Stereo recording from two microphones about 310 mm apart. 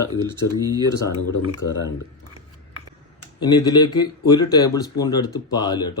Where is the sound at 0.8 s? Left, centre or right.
Centre.